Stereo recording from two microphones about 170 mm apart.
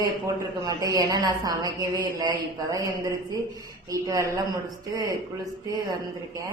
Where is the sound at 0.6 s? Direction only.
20° right (ahead or behind).